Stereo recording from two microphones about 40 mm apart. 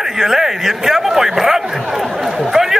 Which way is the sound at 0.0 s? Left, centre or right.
Centre.